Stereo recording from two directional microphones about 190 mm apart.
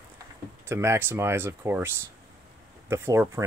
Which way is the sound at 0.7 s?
15° right (ahead or behind).